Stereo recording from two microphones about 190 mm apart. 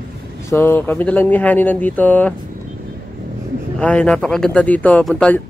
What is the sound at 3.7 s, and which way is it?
Speech, 5° left (ahead or behind).